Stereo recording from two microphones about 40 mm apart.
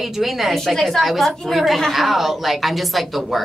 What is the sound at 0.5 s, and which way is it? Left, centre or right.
A woman's voice, centre.